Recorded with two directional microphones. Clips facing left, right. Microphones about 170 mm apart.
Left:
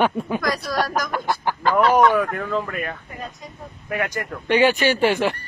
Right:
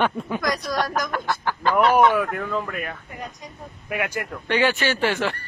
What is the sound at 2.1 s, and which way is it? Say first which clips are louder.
Speech: left 2 dB; centre (ahead or behind).